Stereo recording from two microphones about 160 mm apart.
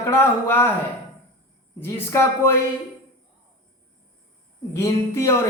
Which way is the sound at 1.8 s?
15° left (ahead or behind).